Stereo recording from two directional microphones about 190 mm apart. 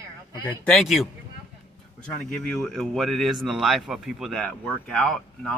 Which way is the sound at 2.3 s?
5° left (ahead or behind).